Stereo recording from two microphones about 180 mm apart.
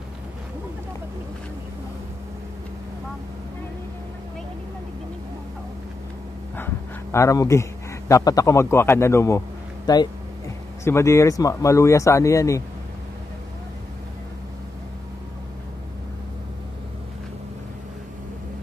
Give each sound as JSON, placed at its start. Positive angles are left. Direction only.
{"t": 6.5, "sound": "dog", "side_deg": 15}
{"t": 8.1, "sound": "speech", "side_deg": 20}